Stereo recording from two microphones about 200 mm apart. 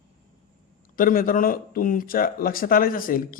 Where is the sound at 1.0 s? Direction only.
45° left (ahead or behind).